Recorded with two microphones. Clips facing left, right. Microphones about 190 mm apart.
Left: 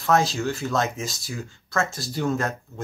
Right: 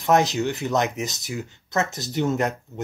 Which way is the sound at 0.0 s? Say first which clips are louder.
Right 2 dB; 20° right (ahead or behind).